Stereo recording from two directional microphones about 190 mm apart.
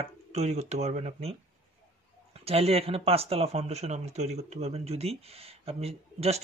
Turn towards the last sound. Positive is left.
turn(degrees=-30)  # may be behind; listen again after turning